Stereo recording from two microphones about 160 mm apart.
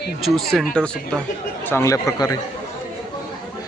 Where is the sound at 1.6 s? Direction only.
15° left (ahead or behind).